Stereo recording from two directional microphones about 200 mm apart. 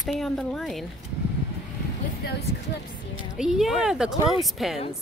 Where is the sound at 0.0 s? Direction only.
Centre (ahead or behind).